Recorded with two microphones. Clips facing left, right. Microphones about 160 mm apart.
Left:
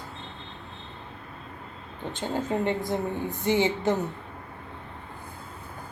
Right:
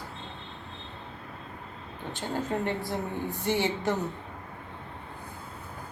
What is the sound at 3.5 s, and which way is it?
Speech, 20° left (ahead or behind).